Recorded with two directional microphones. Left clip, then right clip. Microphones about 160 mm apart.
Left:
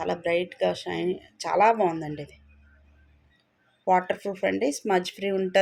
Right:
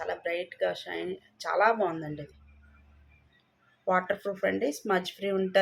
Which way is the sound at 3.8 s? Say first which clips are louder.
Left 4 dB; 40° left (ahead or behind).